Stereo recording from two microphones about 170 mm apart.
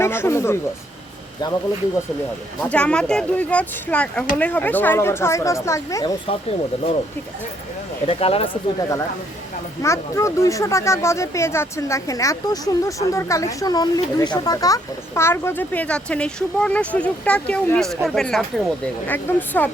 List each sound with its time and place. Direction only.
0.0 s speech: 15° left (ahead or behind)
2.6 s speech: 5° left (ahead or behind)
8.0 s speech: 35° left (ahead or behind)
9.8 s speech: 15° left (ahead or behind)